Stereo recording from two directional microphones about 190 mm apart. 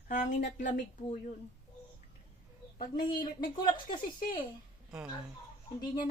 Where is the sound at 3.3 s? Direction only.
50° left (ahead or behind).